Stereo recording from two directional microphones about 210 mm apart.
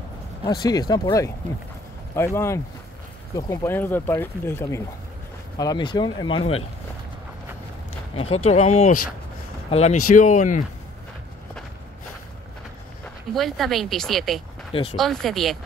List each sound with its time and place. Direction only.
0.6 s speech: 20° left (ahead or behind)
8.2 s speech: 30° left (ahead or behind)
13.0 s speech: centre (ahead or behind)
14.7 s speech: 30° left (ahead or behind)
15.0 s speech: centre (ahead or behind)